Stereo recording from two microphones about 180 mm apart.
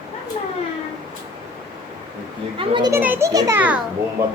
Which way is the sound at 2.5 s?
30° right (ahead or behind).